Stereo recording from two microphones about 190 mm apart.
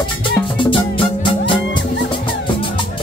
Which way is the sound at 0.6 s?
25° left (ahead or behind).